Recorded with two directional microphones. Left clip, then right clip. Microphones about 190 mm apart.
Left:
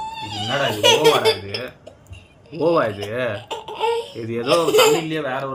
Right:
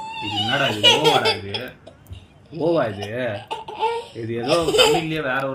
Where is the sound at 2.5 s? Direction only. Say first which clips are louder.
Left 2 dB; 50° left (ahead or behind); by 5.4 s 35° left (ahead or behind).